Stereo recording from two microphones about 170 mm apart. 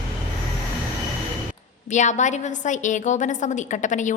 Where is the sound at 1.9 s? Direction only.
45° left (ahead or behind).